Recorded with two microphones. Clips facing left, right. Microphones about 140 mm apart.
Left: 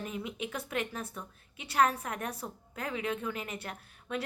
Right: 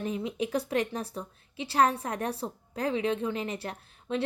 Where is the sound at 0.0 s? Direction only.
30° right (ahead or behind).